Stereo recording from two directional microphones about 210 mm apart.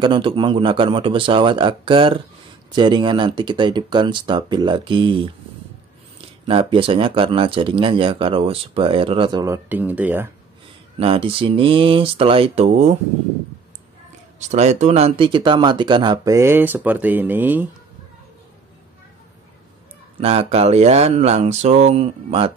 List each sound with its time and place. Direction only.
0.0 s speech: 25° right (ahead or behind)
6.4 s speech: 25° right (ahead or behind)
11.0 s speech: 25° right (ahead or behind)
14.5 s speech: 35° right (ahead or behind); by 17.6 s 10° right (ahead or behind)
20.2 s speech: 30° right (ahead or behind)